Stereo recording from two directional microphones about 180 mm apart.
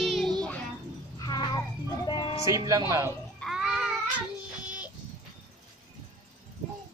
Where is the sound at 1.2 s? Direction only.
20° left (ahead or behind).